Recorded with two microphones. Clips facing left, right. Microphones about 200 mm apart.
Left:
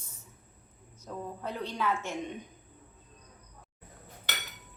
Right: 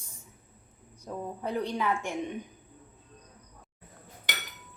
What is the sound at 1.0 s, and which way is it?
Speech, 15° right (ahead or behind).